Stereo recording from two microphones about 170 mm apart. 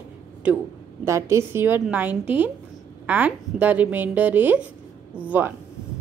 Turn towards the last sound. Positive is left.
turn(degrees=-10)  # may be behind; listen again after turning